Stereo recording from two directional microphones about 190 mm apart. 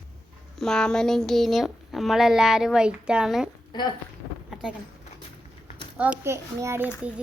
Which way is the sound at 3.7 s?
25° left (ahead or behind).